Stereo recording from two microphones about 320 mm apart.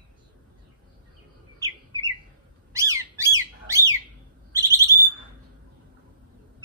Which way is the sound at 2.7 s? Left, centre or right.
Centre.